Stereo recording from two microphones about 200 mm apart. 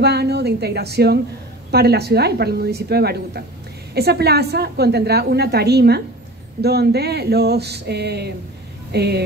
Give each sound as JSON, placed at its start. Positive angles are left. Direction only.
{"t": 0.0, "sound": "a woman's voice", "side_deg": -55}